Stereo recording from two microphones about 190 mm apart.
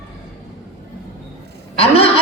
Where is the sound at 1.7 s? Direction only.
30° left (ahead or behind).